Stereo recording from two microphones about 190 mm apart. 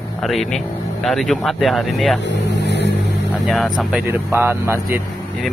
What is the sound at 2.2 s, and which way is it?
Vehicle, 65° left (ahead or behind).